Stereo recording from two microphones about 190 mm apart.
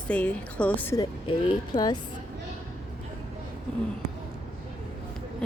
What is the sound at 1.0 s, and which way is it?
Speech, 25° left (ahead or behind).